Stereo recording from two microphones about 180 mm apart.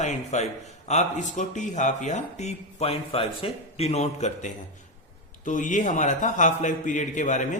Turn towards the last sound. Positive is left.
turn(degrees=45)  # may be behind; listen again after turning